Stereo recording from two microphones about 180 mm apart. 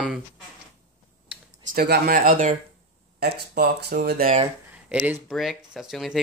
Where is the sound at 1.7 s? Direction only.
60° right (ahead or behind).